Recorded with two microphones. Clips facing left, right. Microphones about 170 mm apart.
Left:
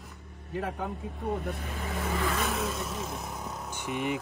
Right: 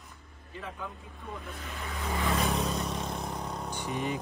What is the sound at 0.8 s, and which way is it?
Speech, 45° left (ahead or behind).